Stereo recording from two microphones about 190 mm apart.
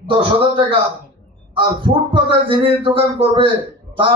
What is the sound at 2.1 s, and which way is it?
A man's voice, 25° right (ahead or behind).